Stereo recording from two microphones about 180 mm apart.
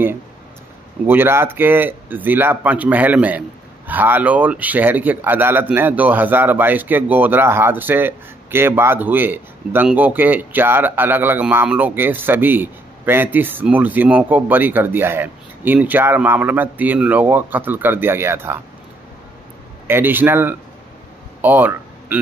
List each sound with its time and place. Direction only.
1.0 s speech: 10° right (ahead or behind)
19.9 s speech: 10° right (ahead or behind)
21.4 s a sound: 10° right (ahead or behind)